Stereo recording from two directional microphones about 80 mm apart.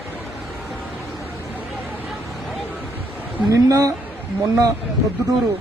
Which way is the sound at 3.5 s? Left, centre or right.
Right.